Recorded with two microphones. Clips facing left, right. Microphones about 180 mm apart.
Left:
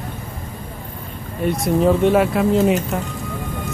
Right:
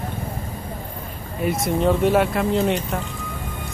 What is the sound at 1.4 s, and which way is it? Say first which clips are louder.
Speech: left 3 dB; centre (ahead or behind).